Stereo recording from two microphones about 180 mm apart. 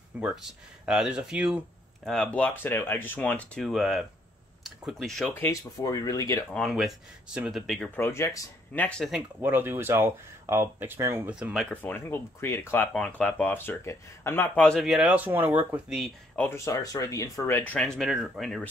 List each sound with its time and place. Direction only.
0.2 s speech: 5° right (ahead or behind)
5.3 s speech: 15° left (ahead or behind)
6.5 s speech: centre (ahead or behind)
9.4 s speech: 10° right (ahead or behind)
11.7 s speech: 10° left (ahead or behind); by 16.1 s 5° right (ahead or behind)
16.3 s speech: 15° left (ahead or behind)
17.7 s speech: 5° left (ahead or behind)